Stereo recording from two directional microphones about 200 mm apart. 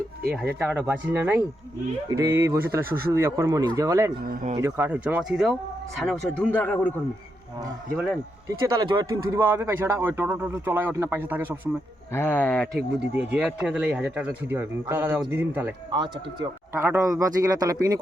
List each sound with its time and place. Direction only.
0.4 s a man's voice: 5° right (ahead or behind)
4.2 s speech: 45° right (ahead or behind)
4.5 s a man's voice: 10° right (ahead or behind); by 6.9 s 10° left (ahead or behind)
8.7 s a man's voice: 20° right (ahead or behind)
12.1 s speech: 10° left (ahead or behind)
13.1 s a man's voice: 5° right (ahead or behind)
15.9 s speech: 25° right (ahead or behind)
16.7 s a man's voice: 10° right (ahead or behind)